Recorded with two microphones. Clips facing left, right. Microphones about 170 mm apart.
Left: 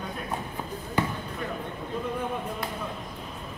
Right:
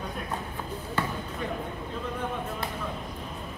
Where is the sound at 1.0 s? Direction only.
15° left (ahead or behind).